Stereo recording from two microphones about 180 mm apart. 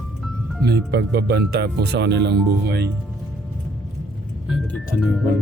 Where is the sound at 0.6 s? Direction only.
65° right (ahead or behind).